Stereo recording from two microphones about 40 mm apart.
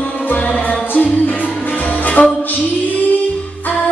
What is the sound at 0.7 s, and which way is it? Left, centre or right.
Music, left.